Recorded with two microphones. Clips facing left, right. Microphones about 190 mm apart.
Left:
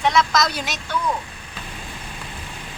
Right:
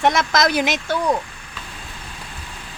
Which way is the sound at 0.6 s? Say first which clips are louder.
Right 6 dB; 90° right.